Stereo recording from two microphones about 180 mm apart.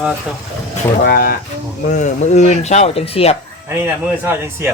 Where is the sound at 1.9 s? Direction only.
45° left (ahead or behind).